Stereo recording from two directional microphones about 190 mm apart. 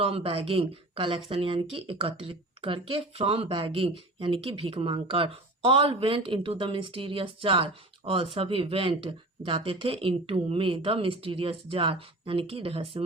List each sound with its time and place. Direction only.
0.0 s speech: 30° right (ahead or behind)